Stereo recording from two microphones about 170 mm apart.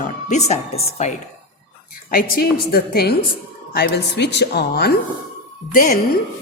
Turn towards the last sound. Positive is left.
turn(degrees=60)  # may be behind; listen again after turning